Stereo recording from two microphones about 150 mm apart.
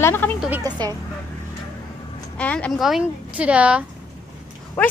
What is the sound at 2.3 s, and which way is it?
Speech, 10° left (ahead or behind).